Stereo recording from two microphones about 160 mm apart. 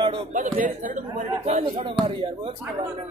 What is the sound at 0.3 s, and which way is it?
Speech, 50° right (ahead or behind).